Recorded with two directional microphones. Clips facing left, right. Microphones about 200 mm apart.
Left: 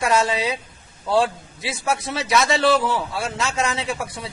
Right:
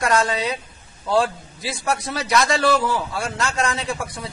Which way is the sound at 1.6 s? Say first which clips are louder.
Even; centre (ahead or behind).